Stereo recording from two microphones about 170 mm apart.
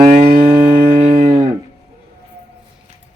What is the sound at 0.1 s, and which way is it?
Livestock, 35° right (ahead or behind).